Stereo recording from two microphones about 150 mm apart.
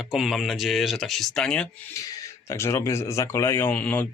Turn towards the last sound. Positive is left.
turn(degrees=10)  # may be behind; listen again after turning